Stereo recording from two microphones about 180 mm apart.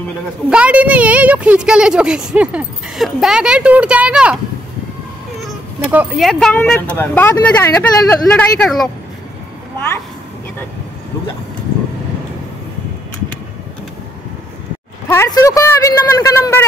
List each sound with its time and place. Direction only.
0.5 s a woman's voice: 5° right (ahead or behind)
5.9 s speech: 5° right (ahead or behind)
15.0 s speech: 15° left (ahead or behind)